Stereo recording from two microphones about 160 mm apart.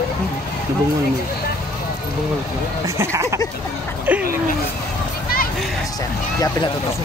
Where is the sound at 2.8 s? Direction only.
15° right (ahead or behind).